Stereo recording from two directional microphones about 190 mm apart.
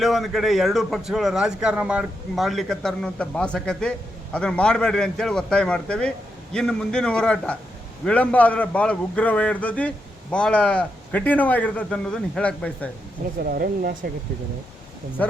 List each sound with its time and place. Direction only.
0.0 s a man's voice: centre (ahead or behind)
13.4 s speech: 50° right (ahead or behind)
15.2 s speech: 10° left (ahead or behind)